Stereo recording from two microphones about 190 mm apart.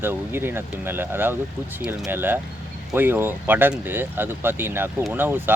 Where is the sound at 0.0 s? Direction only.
10° right (ahead or behind).